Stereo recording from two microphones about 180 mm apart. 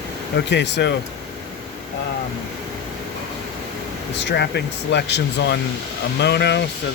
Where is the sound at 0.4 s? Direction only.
75° left (ahead or behind).